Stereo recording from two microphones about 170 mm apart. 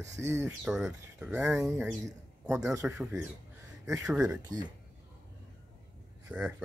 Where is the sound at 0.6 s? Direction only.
5° right (ahead or behind).